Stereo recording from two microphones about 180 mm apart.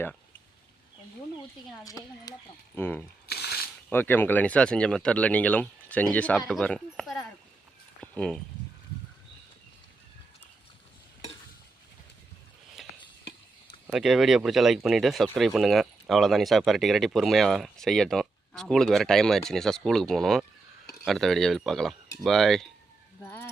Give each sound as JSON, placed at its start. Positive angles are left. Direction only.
{"t": 1.4, "sound": "speech", "side_deg": 20}
{"t": 3.2, "sound": "a sound", "side_deg": 60}
{"t": 3.8, "sound": "speech", "side_deg": 10}
{"t": 8.0, "sound": "a sound", "side_deg": 5}
{"t": 13.8, "sound": "speech", "side_deg": -5}
{"t": 23.2, "sound": "speech", "side_deg": 10}